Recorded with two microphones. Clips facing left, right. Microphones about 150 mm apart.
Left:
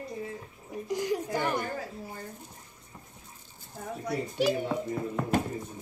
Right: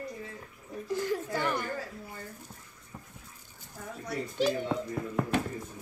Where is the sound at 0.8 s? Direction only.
15° left (ahead or behind).